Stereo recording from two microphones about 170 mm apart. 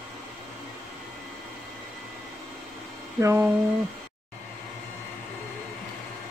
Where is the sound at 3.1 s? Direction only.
15° right (ahead or behind).